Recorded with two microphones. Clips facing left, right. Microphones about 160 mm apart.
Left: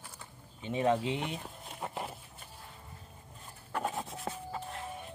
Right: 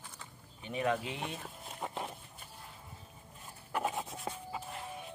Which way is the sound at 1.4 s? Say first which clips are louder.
Left 1 dB; centre (ahead or behind).